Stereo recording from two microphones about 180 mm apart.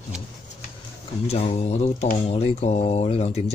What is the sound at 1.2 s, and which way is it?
Speech, 35° left (ahead or behind).